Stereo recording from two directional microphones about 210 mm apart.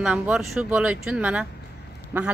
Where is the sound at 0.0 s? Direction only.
5° right (ahead or behind).